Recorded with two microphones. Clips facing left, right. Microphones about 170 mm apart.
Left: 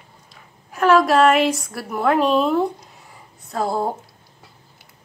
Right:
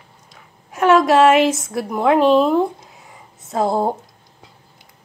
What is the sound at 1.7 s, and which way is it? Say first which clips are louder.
Speech: right 3 dB; 20° right (ahead or behind).